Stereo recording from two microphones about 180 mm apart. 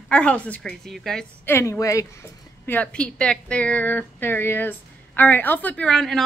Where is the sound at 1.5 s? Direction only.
15° left (ahead or behind).